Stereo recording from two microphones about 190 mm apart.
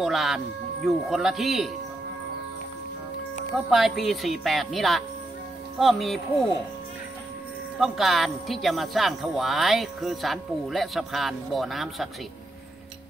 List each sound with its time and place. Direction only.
0.0 s music: centre (ahead or behind)
0.8 s speech: centre (ahead or behind)
3.5 s speech: centre (ahead or behind)
7.8 s speech: centre (ahead or behind)